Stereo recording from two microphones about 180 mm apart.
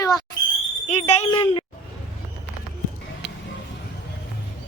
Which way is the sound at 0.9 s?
40° left (ahead or behind).